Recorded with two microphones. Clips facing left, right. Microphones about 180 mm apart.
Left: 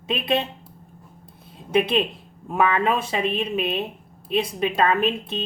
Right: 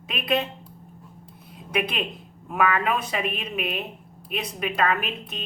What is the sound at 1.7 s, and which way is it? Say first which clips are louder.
A woman's voice: left 7 dB; 30° left (ahead or behind).